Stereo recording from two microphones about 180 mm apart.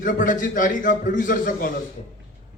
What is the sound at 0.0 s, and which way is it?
A man's voice, 50° left (ahead or behind).